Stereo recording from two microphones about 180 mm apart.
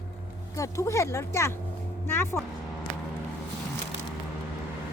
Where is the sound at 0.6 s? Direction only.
15° left (ahead or behind).